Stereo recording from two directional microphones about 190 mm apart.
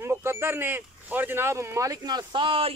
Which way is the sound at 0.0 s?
15° right (ahead or behind).